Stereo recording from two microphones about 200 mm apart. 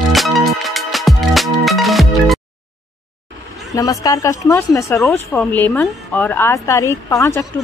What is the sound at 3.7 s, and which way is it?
Speech, 15° left (ahead or behind).